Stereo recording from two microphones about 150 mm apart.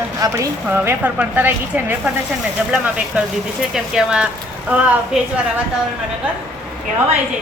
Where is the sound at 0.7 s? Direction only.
15° right (ahead or behind).